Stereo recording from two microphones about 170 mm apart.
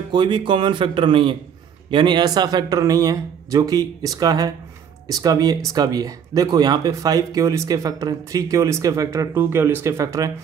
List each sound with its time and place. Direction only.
0.1 s speech: 30° right (ahead or behind)